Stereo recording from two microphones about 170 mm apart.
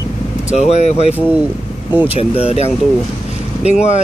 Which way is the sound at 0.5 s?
40° left (ahead or behind).